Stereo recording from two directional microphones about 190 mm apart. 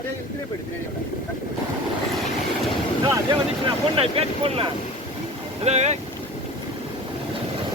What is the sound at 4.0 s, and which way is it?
Vehicle, 30° right (ahead or behind).